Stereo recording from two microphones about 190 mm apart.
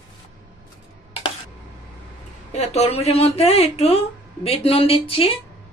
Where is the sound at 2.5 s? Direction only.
35° left (ahead or behind).